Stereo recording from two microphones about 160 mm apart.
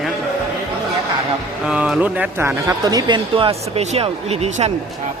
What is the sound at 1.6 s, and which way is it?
Speech, 5° right (ahead or behind).